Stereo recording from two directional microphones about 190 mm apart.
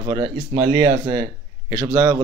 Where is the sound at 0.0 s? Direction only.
20° right (ahead or behind).